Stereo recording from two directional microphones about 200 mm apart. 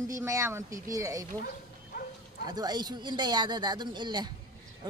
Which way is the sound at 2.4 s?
20° right (ahead or behind).